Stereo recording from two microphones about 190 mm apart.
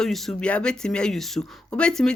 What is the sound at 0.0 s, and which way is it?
Speech, centre (ahead or behind).